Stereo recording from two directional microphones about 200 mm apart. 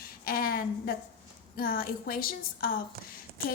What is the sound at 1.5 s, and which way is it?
A woman's voice, 45° left (ahead or behind).